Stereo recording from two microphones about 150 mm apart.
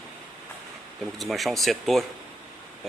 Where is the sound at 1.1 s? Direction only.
Centre (ahead or behind).